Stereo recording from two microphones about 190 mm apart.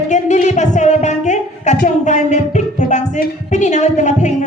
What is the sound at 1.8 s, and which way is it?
Music, 40° left (ahead or behind).